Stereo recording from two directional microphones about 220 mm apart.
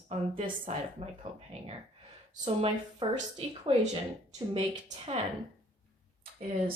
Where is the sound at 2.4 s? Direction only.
25° right (ahead or behind).